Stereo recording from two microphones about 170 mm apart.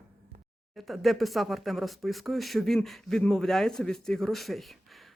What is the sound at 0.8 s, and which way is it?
Speech, centre (ahead or behind).